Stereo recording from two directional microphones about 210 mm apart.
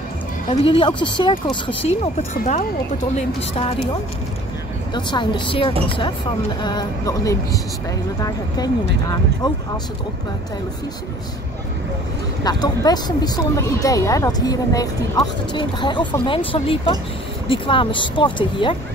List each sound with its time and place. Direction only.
0.5 s speech: 25° left (ahead or behind)
2.1 s speech: 35° left (ahead or behind)
4.9 s a woman's voice: 20° left (ahead or behind)
12.4 s speech: 20° left (ahead or behind)